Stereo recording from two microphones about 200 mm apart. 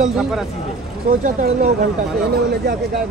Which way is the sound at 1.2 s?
40° right (ahead or behind).